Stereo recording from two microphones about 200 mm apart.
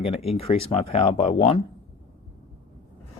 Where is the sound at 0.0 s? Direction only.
30° left (ahead or behind).